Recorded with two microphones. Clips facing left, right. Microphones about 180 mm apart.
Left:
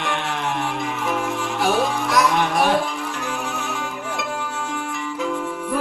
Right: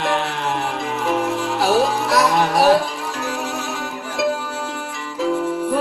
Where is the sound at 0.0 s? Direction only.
35° right (ahead or behind).